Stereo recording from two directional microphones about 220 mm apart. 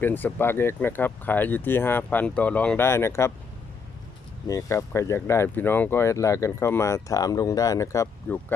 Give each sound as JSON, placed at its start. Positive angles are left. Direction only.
{"t": 0.0, "sound": "speech", "side_deg": 10}
{"t": 4.4, "sound": "speech", "side_deg": 15}